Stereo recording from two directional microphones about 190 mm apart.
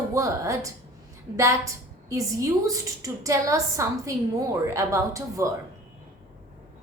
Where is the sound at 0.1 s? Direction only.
15° right (ahead or behind).